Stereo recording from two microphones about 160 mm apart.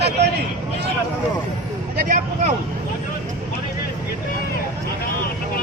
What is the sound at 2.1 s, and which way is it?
Speech, 50° right (ahead or behind).